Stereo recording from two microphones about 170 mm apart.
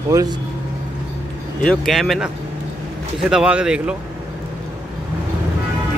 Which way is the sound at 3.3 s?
5° right (ahead or behind).